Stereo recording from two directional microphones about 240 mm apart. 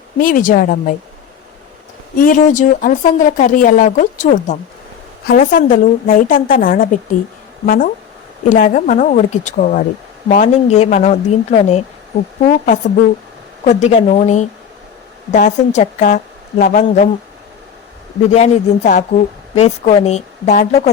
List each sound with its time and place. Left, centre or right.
0.2 s speech: left
2.1 s a woman's voice: left
13.7 s a woman's voice: left
18.3 s a woman's voice: left